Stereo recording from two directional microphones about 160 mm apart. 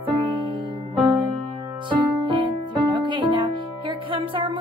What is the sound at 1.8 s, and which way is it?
Music, 30° right (ahead or behind).